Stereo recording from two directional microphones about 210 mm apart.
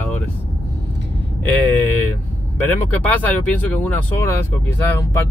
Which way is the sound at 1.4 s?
10° left (ahead or behind).